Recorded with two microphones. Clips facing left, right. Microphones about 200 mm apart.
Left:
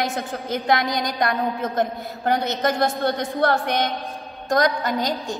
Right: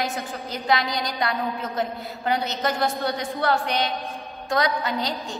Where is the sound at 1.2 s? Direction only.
45° left (ahead or behind).